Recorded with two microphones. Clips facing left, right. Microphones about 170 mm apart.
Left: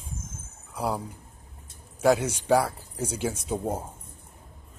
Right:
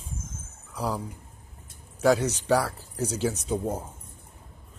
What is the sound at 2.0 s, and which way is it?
Speech, 10° left (ahead or behind).